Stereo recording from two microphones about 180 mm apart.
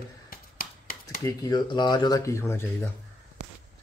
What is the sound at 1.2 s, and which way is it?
Speech, 20° left (ahead or behind).